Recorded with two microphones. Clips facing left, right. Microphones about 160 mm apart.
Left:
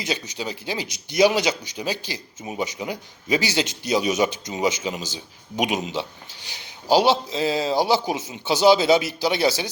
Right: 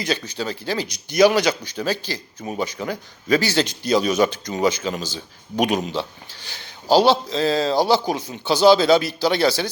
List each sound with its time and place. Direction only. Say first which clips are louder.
0.0 s a man's voice: right 3 dB; 20° left (ahead or behind)